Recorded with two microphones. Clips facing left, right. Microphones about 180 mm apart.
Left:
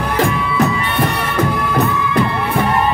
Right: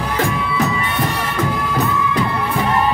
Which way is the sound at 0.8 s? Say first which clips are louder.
Left 3 dB; 60° left (ahead or behind).